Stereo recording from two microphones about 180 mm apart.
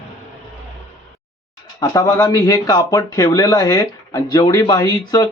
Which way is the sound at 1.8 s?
20° left (ahead or behind).